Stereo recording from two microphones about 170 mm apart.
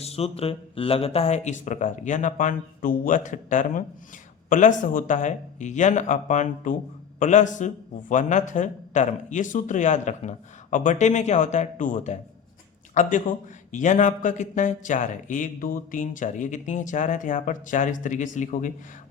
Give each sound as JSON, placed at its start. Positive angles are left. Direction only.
{"t": 0.0, "sound": "a man's voice", "side_deg": 35}